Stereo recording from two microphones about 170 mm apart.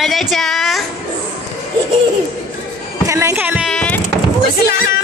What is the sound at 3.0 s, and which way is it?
Speech, 15° right (ahead or behind).